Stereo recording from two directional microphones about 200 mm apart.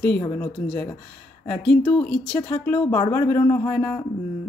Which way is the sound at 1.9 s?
5° left (ahead or behind).